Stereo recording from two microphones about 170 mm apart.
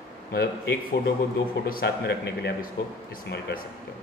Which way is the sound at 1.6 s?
65° left (ahead or behind).